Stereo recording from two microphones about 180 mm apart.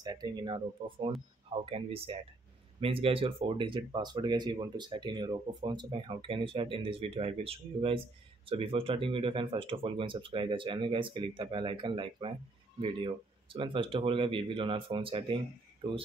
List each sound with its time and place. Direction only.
0.0 s speech: 25° right (ahead or behind)